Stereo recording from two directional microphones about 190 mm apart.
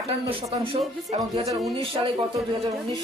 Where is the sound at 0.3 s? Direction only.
30° right (ahead or behind).